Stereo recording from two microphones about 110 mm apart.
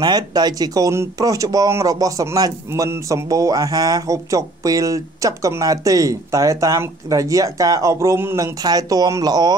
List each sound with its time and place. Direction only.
0.0 s speech: 35° right (ahead or behind); by 8.5 s 20° right (ahead or behind)
8.6 s speech: 35° right (ahead or behind)